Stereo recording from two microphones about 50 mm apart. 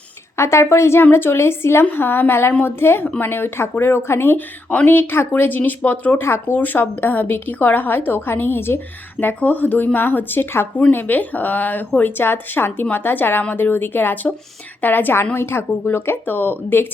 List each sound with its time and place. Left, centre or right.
0.3 s a woman's voice: left
6.1 s speech: left
6.6 s speech: left
9.2 s speech: left
10.9 s speech: left
15.4 s speech: left